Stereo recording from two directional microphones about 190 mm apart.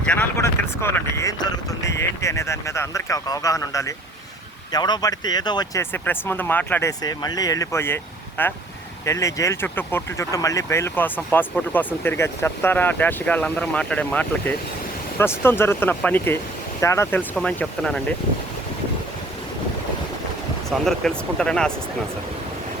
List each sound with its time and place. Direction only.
0.0 s speech: 5° left (ahead or behind)
20.7 s speech: centre (ahead or behind)